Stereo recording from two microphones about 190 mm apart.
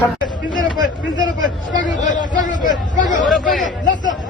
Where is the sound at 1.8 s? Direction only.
45° left (ahead or behind).